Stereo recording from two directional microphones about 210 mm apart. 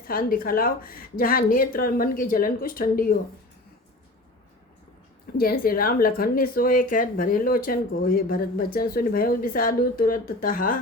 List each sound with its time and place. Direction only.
0.1 s speech: 45° left (ahead or behind)
5.4 s speech: 45° left (ahead or behind)